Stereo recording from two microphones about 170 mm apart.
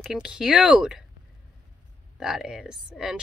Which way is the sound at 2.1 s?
5° right (ahead or behind).